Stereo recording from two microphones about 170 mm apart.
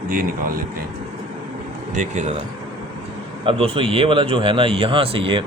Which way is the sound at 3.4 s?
30° right (ahead or behind).